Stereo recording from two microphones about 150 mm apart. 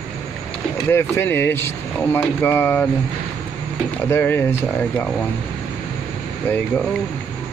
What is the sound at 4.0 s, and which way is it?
Speech, 15° left (ahead or behind).